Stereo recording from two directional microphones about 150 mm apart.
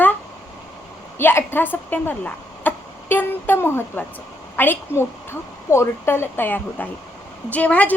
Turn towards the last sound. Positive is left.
turn(degrees=10)  # may be behind; listen again after turning